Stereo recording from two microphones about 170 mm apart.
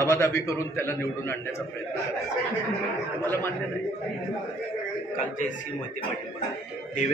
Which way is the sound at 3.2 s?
15° left (ahead or behind).